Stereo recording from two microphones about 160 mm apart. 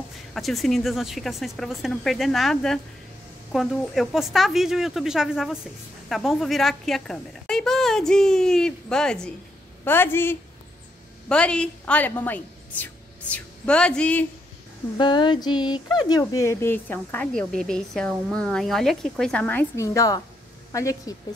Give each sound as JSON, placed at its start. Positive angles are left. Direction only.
{"t": 0.3, "sound": "a woman's voice", "side_deg": 0}
{"t": 15.0, "sound": "a woman's voice", "side_deg": 30}